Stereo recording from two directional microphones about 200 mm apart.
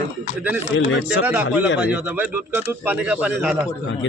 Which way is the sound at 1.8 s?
5° right (ahead or behind).